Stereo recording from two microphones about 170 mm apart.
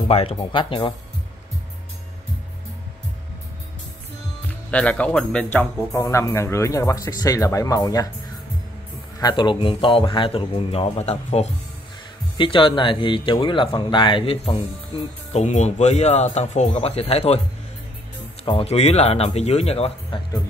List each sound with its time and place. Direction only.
0.1 s speech: 35° left (ahead or behind)
4.6 s speech: 5° left (ahead or behind)
9.2 s speech: 30° left (ahead or behind)
12.4 s speech: 30° left (ahead or behind)
15.3 s speech: 45° left (ahead or behind)
18.4 s speech: 35° left (ahead or behind)